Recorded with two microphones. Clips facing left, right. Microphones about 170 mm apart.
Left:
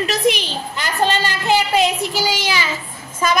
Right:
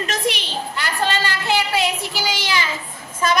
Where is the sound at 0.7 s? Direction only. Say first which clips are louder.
Left 4 dB; 15° left (ahead or behind).